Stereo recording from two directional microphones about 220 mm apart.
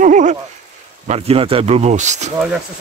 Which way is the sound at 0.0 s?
35° right (ahead or behind).